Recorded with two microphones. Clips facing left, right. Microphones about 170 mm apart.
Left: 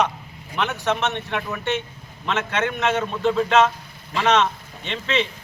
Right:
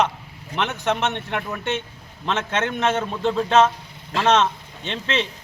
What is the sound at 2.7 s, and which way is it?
Speech, 30° right (ahead or behind).